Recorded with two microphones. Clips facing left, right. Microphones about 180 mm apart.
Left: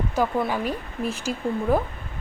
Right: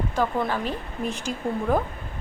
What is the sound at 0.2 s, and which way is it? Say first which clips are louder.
Speech: left 2 dB; 10° left (ahead or behind).